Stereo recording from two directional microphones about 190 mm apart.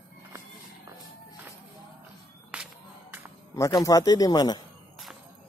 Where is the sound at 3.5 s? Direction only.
15° left (ahead or behind).